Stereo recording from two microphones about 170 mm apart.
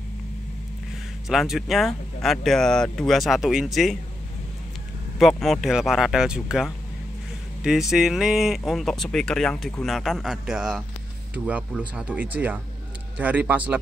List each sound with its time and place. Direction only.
1.3 s speech: centre (ahead or behind)
5.2 s speech: centre (ahead or behind)